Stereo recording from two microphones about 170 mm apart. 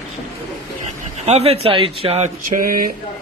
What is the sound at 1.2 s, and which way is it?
Speech, 40° right (ahead or behind).